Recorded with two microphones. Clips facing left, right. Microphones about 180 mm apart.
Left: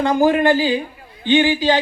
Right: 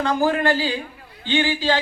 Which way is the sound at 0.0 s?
15° left (ahead or behind).